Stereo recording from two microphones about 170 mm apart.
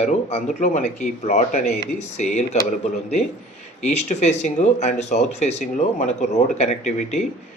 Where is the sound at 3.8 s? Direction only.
40° left (ahead or behind).